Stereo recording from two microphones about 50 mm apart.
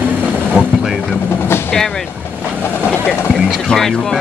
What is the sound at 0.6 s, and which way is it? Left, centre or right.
Speech, right.